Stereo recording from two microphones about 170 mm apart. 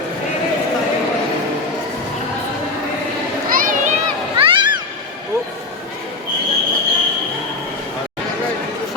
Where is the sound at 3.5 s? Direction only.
55° right (ahead or behind).